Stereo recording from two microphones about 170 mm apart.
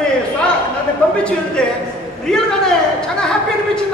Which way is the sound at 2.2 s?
5° left (ahead or behind).